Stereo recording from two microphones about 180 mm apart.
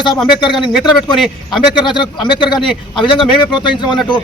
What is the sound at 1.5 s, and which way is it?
A man's voice, 25° left (ahead or behind).